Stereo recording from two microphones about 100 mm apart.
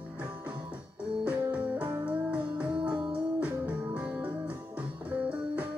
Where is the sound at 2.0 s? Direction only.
15° right (ahead or behind).